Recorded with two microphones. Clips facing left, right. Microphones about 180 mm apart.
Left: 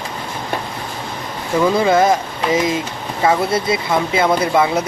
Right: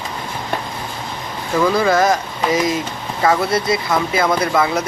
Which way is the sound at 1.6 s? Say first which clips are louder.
Left 1 dB; 25° left (ahead or behind).